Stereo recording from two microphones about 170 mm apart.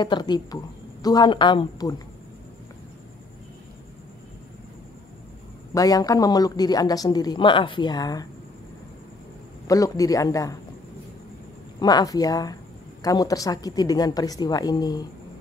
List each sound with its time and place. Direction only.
0.0 s speech: 25° left (ahead or behind)
5.8 s speech: 20° left (ahead or behind)
9.7 s speech: 20° left (ahead or behind)
11.8 s speech: 20° left (ahead or behind)